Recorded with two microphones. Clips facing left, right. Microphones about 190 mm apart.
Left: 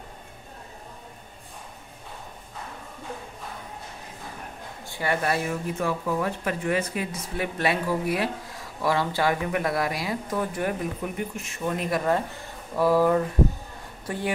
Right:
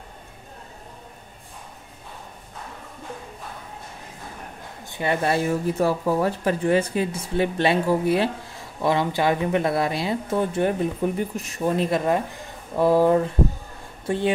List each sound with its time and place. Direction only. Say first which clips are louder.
4.8 s speech: right 3 dB; 20° right (ahead or behind)